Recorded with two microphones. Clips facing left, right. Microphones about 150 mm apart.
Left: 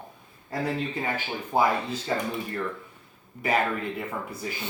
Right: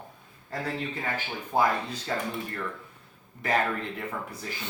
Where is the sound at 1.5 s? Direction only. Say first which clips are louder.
Left 2 dB; 15° left (ahead or behind).